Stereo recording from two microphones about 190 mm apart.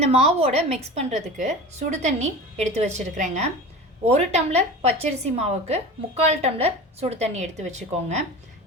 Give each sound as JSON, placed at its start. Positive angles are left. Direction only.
{"t": 0.0, "sound": "a woman's voice", "side_deg": -35}